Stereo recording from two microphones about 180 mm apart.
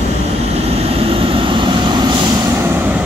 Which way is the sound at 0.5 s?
35° right (ahead or behind).